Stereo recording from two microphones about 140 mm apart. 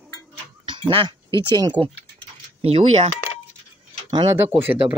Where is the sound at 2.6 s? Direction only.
45° right (ahead or behind).